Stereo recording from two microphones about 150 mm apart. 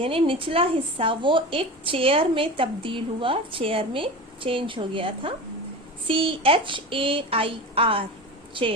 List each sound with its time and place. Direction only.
0.0 s a woman's voice: 35° right (ahead or behind)